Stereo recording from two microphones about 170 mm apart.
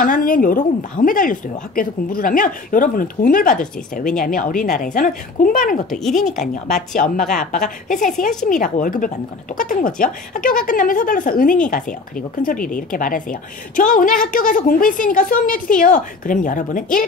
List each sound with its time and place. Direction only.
0.0 s a woman's voice: 55° left (ahead or behind)
5.9 s speech: centre (ahead or behind)
7.9 s a woman's voice: 50° left (ahead or behind)